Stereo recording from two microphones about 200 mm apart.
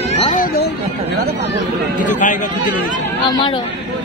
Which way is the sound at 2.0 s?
40° left (ahead or behind).